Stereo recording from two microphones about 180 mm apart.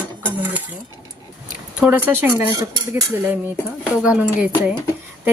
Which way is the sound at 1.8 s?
10° right (ahead or behind).